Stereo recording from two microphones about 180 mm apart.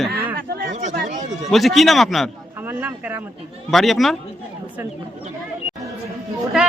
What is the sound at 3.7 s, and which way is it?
Speech, centre (ahead or behind).